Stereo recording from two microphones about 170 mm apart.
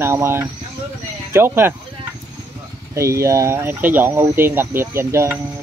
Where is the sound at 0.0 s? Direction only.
15° right (ahead or behind).